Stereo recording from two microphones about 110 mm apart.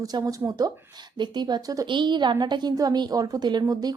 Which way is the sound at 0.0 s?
35° right (ahead or behind).